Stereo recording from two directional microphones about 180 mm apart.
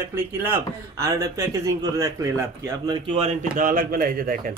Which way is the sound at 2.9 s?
35° right (ahead or behind).